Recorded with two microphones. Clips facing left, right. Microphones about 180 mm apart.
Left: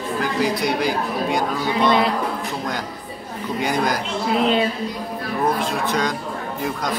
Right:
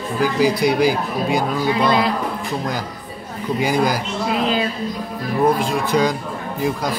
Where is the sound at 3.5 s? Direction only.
5° right (ahead or behind).